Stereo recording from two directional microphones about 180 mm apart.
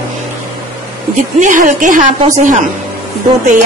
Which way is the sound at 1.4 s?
45° right (ahead or behind).